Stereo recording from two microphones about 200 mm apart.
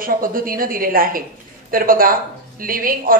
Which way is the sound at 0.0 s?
45° right (ahead or behind).